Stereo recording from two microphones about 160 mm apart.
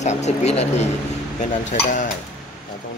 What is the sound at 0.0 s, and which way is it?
Speech, 45° left (ahead or behind).